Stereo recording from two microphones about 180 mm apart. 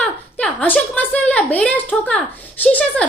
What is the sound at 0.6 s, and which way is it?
A woman's voice, 10° left (ahead or behind).